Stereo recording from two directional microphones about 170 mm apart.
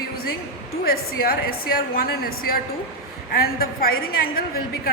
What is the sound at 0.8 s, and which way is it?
A woman's voice, 65° left (ahead or behind).